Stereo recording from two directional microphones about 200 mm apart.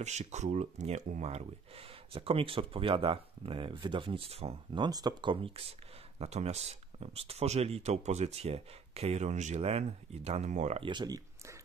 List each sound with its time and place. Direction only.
0.0 s speech: 35° right (ahead or behind)